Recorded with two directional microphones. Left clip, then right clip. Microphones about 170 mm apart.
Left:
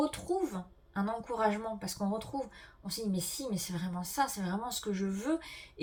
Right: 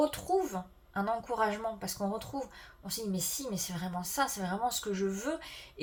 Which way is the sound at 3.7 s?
35° right (ahead or behind).